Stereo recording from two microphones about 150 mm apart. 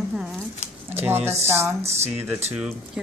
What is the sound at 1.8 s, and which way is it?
Speech, 45° right (ahead or behind).